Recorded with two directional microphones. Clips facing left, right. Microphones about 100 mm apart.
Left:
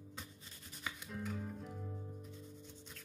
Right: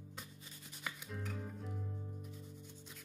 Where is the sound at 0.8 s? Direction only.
Centre (ahead or behind).